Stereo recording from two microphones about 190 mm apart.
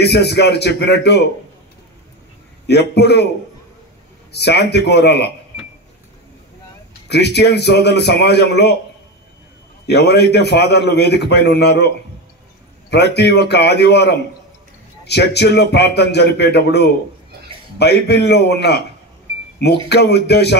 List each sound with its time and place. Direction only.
0.0 s a man's voice: 60° left (ahead or behind)
2.6 s a man's voice: 60° left (ahead or behind)
4.3 s a man's voice: 60° left (ahead or behind)
7.1 s a man's voice: 60° left (ahead or behind)
9.8 s a man's voice: 60° left (ahead or behind)
12.9 s a man's voice: 60° left (ahead or behind)
19.9 s a man's voice: 60° left (ahead or behind)